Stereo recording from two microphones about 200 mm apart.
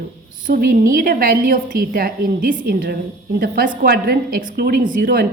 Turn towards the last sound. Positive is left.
turn(degrees=-45)  # may be behind; listen again after turning